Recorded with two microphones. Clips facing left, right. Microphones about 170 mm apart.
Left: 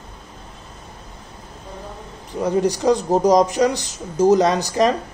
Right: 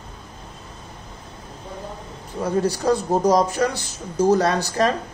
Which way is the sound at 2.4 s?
15° left (ahead or behind).